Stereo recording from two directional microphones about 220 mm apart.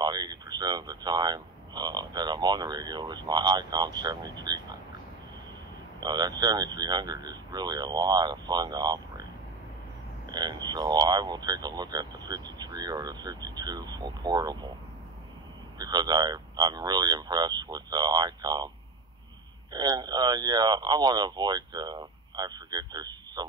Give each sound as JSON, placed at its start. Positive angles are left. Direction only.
{"t": 0.0, "sound": "speech", "side_deg": -20}
{"t": 6.0, "sound": "speech", "side_deg": -20}
{"t": 10.3, "sound": "speech", "side_deg": -20}
{"t": 15.8, "sound": "speech", "side_deg": -15}
{"t": 19.7, "sound": "speech", "side_deg": -20}